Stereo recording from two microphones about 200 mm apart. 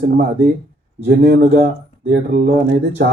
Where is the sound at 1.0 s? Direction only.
50° right (ahead or behind).